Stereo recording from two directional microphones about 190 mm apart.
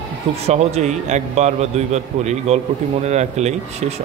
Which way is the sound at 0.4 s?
35° right (ahead or behind).